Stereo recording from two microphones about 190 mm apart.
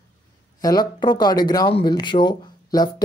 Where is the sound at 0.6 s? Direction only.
20° left (ahead or behind).